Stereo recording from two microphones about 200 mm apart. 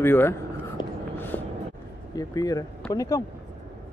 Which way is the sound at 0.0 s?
10° left (ahead or behind).